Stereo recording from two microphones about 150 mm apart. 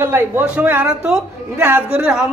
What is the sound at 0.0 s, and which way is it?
A man's voice, 15° right (ahead or behind).